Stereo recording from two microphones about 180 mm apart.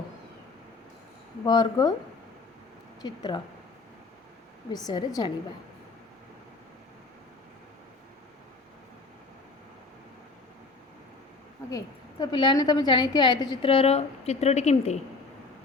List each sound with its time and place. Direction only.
1.5 s a woman's voice: 25° left (ahead or behind)
3.0 s a woman's voice: 25° left (ahead or behind)
4.7 s a woman's voice: 20° left (ahead or behind)
12.2 s a woman's voice: 25° left (ahead or behind)